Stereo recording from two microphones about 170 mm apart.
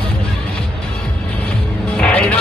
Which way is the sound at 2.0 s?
5° left (ahead or behind).